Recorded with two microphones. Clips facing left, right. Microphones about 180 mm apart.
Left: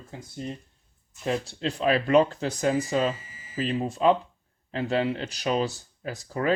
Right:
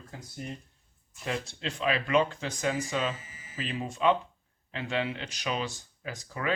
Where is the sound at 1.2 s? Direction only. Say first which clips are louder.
Left 6 dB; 35° left (ahead or behind).